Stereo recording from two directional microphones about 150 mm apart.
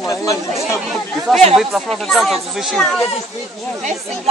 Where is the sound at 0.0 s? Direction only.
20° left (ahead or behind).